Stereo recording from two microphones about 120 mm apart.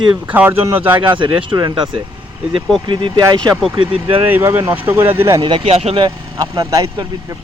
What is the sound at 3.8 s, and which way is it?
Speech, 45° right (ahead or behind).